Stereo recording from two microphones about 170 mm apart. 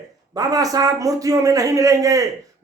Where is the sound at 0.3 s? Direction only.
20° right (ahead or behind).